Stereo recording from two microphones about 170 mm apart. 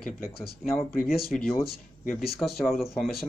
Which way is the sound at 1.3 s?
Centre (ahead or behind).